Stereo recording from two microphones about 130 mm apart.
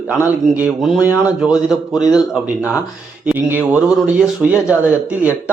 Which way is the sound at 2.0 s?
30° left (ahead or behind).